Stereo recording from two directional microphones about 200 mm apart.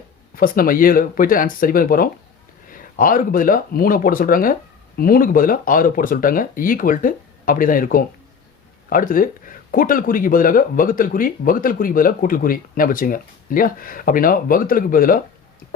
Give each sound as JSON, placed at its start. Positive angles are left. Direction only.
{"t": 0.3, "sound": "speech", "side_deg": 45}